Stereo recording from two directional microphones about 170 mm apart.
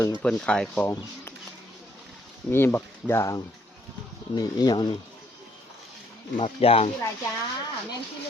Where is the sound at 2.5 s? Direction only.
15° left (ahead or behind).